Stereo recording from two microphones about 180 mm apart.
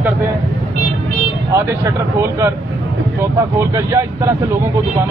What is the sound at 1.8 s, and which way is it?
Speech, 15° right (ahead or behind).